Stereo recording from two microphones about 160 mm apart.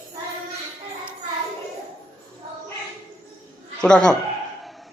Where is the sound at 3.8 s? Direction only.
5° left (ahead or behind).